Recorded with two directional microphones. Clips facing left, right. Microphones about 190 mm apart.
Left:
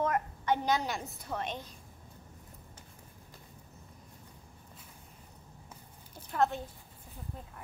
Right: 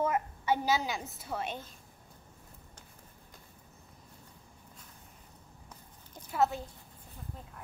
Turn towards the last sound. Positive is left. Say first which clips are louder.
# even
turn(degrees=-5)  # may be behind; listen again after turning